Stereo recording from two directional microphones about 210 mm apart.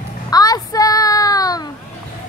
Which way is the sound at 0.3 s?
20° left (ahead or behind).